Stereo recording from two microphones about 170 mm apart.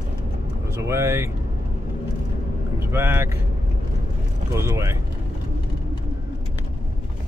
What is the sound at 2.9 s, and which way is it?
Speech, 15° right (ahead or behind).